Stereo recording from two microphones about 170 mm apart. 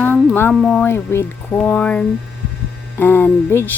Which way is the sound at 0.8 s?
15° left (ahead or behind).